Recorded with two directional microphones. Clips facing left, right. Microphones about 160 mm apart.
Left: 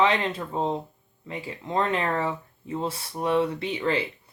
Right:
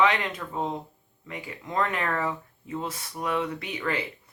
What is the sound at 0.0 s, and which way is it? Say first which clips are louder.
Speech: left 1 dB; 30° left (ahead or behind).